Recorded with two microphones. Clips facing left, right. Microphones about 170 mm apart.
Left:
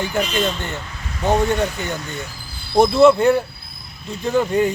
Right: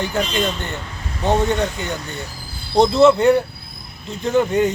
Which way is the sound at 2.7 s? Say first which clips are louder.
Even; 20° right (ahead or behind).